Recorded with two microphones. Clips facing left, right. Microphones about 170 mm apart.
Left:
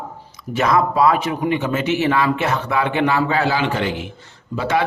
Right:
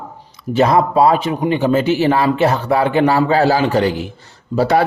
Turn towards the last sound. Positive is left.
turn(degrees=-40)  # may be behind; listen again after turning